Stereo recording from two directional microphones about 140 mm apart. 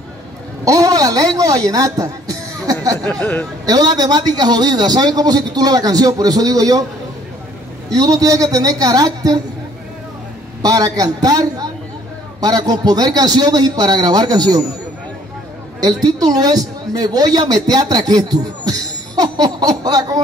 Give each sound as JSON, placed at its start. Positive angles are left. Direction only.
{"t": 0.7, "sound": "speech", "side_deg": -25}
{"t": 3.1, "sound": "speech", "side_deg": 10}
{"t": 3.6, "sound": "a man's voice", "side_deg": -25}
{"t": 7.9, "sound": "a man's voice", "side_deg": -25}
{"t": 10.6, "sound": "a man's voice", "side_deg": -25}
{"t": 16.0, "sound": "speech", "side_deg": -25}